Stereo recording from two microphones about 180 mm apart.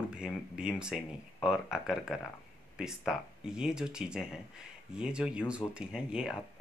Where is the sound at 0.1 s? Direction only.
5° right (ahead or behind).